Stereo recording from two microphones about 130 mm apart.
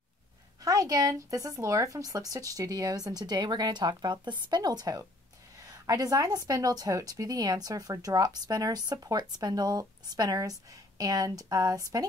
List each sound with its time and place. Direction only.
0.6 s speech: 30° right (ahead or behind)